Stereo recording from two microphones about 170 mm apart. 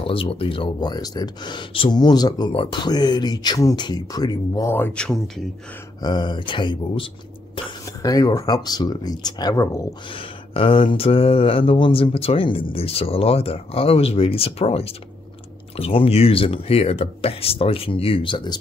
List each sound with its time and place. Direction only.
0.0 s speech: 30° left (ahead or behind); by 5.2 s 5° left (ahead or behind)
6.0 s speech: 25° left (ahead or behind)
10.1 s speech: 35° left (ahead or behind)